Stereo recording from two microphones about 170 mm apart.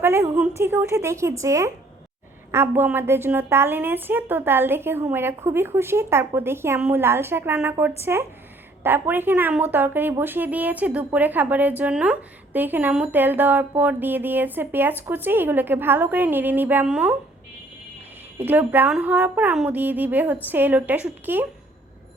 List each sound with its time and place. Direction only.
0.0 s a woman's voice: 15° right (ahead or behind)
18.3 s a woman's voice: 10° right (ahead or behind)